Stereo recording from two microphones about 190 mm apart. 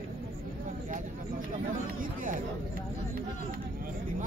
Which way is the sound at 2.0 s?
45° right (ahead or behind).